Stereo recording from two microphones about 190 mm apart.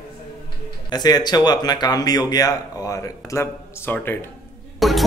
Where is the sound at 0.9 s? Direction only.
20° left (ahead or behind).